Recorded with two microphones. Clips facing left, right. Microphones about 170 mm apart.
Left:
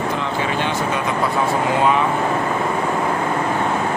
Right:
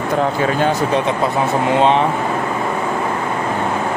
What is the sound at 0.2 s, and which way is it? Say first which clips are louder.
Speech: right 5 dB; 45° right (ahead or behind).